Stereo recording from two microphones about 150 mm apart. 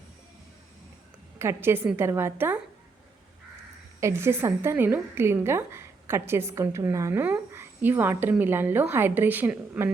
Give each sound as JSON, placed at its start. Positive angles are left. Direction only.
{"t": 1.4, "sound": "a woman's voice", "side_deg": -15}
{"t": 4.0, "sound": "a woman's voice", "side_deg": -15}